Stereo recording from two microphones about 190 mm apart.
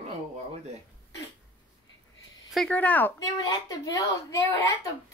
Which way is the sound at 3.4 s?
20° left (ahead or behind).